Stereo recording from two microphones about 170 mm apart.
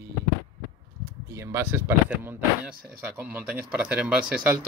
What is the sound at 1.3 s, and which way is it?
Speech, 15° right (ahead or behind).